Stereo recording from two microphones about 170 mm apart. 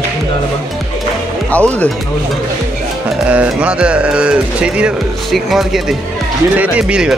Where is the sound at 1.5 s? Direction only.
10° left (ahead or behind).